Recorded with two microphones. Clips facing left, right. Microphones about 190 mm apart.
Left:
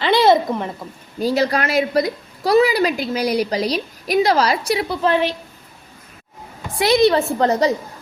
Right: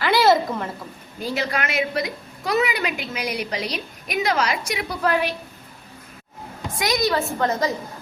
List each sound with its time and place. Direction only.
0.0 s a sound: 20° left (ahead or behind)
1.2 s a woman's voice: 35° left (ahead or behind)
6.7 s a woman's voice: 30° left (ahead or behind)